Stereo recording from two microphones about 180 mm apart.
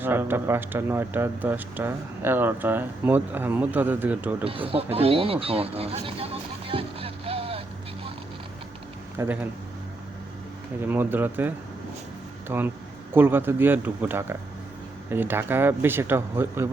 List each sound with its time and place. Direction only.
0.0 s speech: 10° right (ahead or behind)
4.4 s speech: 30° right (ahead or behind)
9.1 s speech: 10° right (ahead or behind)
10.8 s speech: 10° right (ahead or behind)